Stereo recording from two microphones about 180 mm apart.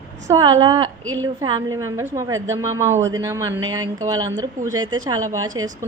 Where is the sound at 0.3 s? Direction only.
20° right (ahead or behind).